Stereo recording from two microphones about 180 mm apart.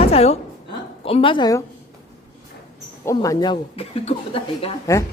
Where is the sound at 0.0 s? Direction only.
35° left (ahead or behind).